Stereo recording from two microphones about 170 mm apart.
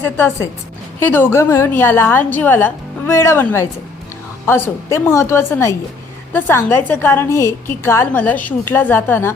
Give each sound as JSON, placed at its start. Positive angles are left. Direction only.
{"t": 0.0, "sound": "a woman's voice", "side_deg": 10}